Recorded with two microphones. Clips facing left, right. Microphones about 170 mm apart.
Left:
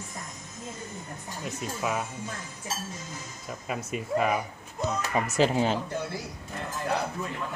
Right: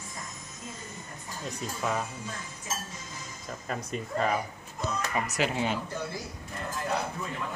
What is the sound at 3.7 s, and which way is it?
Speech, 5° left (ahead or behind).